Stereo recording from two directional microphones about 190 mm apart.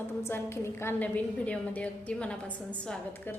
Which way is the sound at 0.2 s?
10° left (ahead or behind).